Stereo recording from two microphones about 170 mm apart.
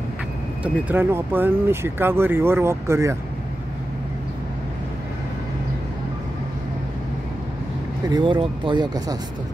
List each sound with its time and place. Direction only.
0.8 s speech: 10° right (ahead or behind)
8.1 s speech: 30° right (ahead or behind)